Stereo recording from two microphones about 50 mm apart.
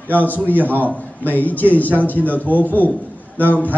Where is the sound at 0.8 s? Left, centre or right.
Left.